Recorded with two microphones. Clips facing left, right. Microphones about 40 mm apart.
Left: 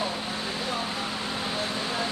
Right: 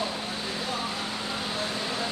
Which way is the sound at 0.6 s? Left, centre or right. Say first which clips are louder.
Left 1 dB; centre.